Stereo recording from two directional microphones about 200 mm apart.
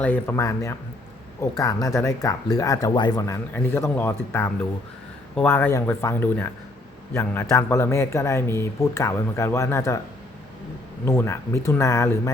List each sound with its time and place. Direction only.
0.0 s speech: 10° left (ahead or behind)
11.0 s speech: 15° left (ahead or behind)